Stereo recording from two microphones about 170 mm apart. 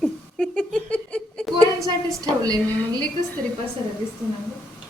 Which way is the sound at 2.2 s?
20° right (ahead or behind).